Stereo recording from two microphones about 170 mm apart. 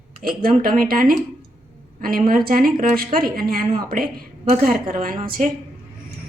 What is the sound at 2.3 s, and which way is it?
A woman's voice, 60° right (ahead or behind).